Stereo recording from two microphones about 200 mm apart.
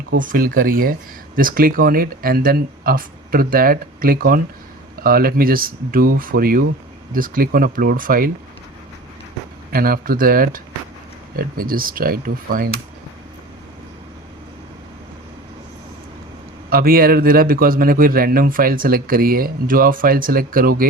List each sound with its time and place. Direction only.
0.1 s a man's voice: 45° right (ahead or behind)
9.7 s a man's voice: 45° right (ahead or behind)
16.6 s a man's voice: 45° right (ahead or behind)